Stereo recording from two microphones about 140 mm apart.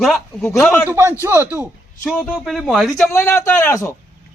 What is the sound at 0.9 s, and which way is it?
Speech, 15° right (ahead or behind).